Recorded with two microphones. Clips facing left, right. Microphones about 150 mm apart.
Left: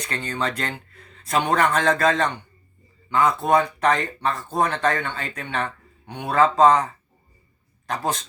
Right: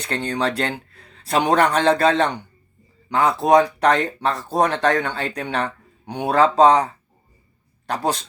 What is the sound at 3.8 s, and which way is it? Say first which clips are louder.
Speech: right 3 dB; 70° right (ahead or behind).